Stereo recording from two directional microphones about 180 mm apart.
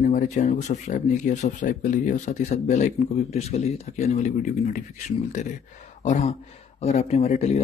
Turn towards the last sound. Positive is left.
turn(degrees=35)  # may be behind; listen again after turning